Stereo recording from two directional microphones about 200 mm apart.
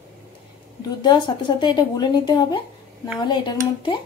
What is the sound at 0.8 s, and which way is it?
A woman's voice, 20° left (ahead or behind).